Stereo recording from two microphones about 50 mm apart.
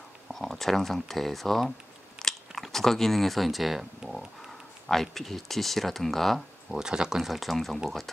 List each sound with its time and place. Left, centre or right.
0.3 s speech: centre
4.0 s a sound: centre
4.8 s speech: centre
6.7 s speech: centre